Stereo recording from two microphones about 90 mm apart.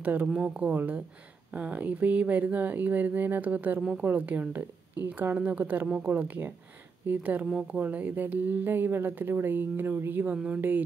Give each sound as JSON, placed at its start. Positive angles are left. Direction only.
{"t": 0.0, "sound": "speech", "side_deg": -15}
{"t": 10.3, "sound": "speech", "side_deg": -10}